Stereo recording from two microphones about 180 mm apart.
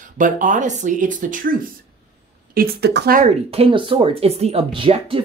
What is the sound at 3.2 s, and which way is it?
Speech, 35° right (ahead or behind).